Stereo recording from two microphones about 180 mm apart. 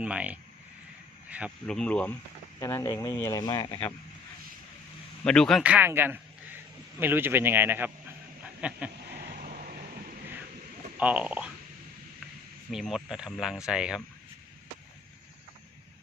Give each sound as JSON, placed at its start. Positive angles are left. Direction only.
{"t": 0.0, "sound": "speech", "side_deg": -5}
{"t": 5.2, "sound": "a man's voice", "side_deg": 5}
{"t": 9.1, "sound": "a sound", "side_deg": -55}
{"t": 10.9, "sound": "a man's voice", "side_deg": -10}
{"t": 12.7, "sound": "speech", "side_deg": 0}